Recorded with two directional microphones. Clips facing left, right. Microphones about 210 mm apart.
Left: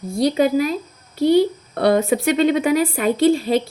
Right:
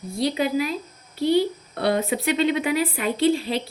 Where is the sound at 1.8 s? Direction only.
45° left (ahead or behind).